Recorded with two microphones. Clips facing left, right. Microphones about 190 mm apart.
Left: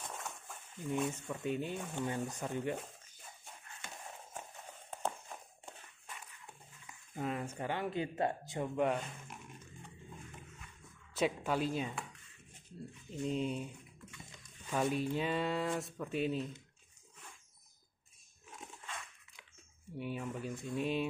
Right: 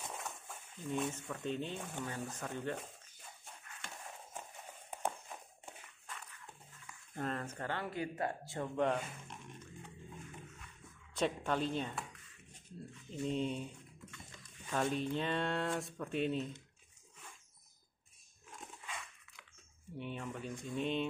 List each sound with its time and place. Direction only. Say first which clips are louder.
0.0 s dog: even; centre (ahead or behind)
1.1 s speech: left 2 dB; 10° left (ahead or behind)
6.0 s dog: even; 15° left (ahead or behind)
7.2 s speech: left 2 dB; 10° left (ahead or behind)
11.1 s speech: left 1 dB; 5° left (ahead or behind)
13.1 s speech: left 1 dB; centre (ahead or behind)
14.7 s speech: left 1 dB; 10° left (ahead or behind)
18.5 s dog: even; centre (ahead or behind)
20.0 s speech: left 3 dB; 5° left (ahead or behind)